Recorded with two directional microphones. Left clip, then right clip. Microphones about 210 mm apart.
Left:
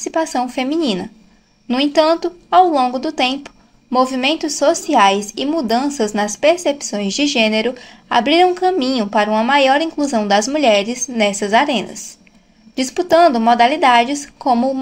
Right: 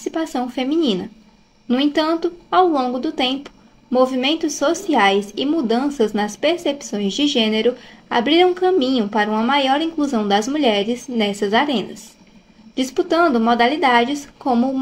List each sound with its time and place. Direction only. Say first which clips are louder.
0.0 s a woman's voice: left 5 dB; 30° left (ahead or behind)
11.3 s a woman's voice: left 2 dB; 20° left (ahead or behind)
12.9 s a woman's voice: left 5 dB; 30° left (ahead or behind)